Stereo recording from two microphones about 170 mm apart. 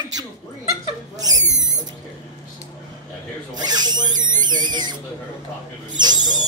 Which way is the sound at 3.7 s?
25° right (ahead or behind).